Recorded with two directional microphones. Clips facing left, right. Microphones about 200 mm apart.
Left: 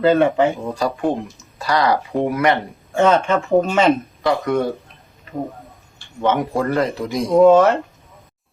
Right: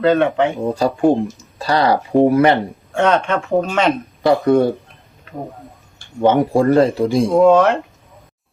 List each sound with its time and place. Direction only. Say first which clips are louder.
0.0 s speech: even; 5° left (ahead or behind)
0.6 s speech: right 5 dB; 25° right (ahead or behind)
2.9 s speech: left 1 dB; 5° left (ahead or behind)
4.2 s speech: right 5 dB; 30° right (ahead or behind)
6.0 s speech: right 5 dB; 35° right (ahead or behind)
7.3 s speech: left 1 dB; 5° left (ahead or behind)